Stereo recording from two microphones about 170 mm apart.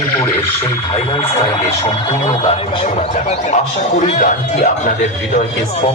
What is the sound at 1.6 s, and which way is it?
Speech, 25° left (ahead or behind).